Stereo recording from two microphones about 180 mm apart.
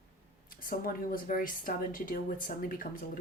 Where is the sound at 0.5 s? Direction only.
50° left (ahead or behind).